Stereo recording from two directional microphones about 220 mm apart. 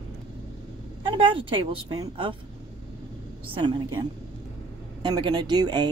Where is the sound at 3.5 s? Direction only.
20° right (ahead or behind).